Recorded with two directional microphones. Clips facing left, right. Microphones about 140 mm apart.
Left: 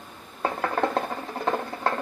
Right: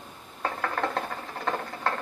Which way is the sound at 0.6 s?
20° left (ahead or behind).